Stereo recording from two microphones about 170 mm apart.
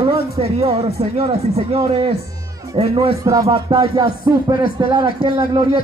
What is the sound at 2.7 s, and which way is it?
A man's voice, 20° right (ahead or behind).